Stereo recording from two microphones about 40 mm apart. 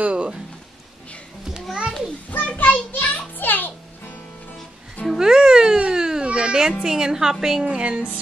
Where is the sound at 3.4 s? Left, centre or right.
Left.